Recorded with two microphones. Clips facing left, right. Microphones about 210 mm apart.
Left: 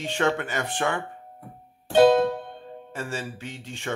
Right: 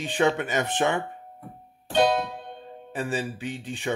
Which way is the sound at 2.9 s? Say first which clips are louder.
Right 4 dB; 15° right (ahead or behind).